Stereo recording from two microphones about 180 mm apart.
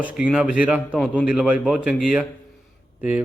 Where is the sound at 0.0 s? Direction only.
5° right (ahead or behind).